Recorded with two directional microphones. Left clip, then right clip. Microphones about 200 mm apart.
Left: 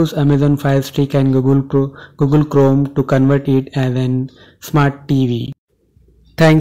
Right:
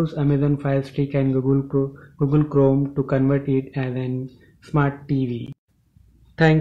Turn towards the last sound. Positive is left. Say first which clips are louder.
# left 7 dB
turn(degrees=45)  # may be behind; listen again after turning